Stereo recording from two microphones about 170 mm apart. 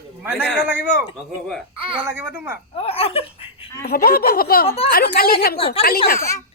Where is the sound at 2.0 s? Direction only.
10° right (ahead or behind).